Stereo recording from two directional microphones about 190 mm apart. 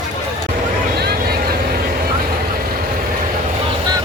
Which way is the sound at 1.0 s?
55° right (ahead or behind).